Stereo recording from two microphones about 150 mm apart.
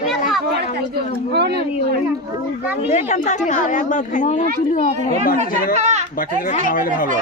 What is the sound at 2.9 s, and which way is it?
Speech, 50° left (ahead or behind).